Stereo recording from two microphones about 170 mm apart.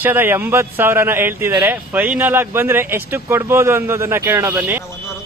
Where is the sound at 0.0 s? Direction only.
10° right (ahead or behind).